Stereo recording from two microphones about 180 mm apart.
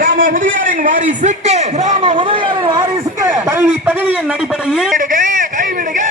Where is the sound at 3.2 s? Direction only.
10° right (ahead or behind).